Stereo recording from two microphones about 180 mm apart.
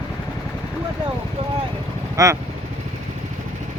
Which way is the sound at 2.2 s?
20° right (ahead or behind).